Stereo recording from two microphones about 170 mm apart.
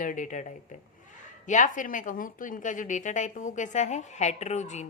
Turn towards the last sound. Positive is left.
turn(degrees=40)  # may be behind; listen again after turning